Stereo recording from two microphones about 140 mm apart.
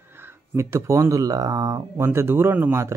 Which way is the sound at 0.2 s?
20° right (ahead or behind).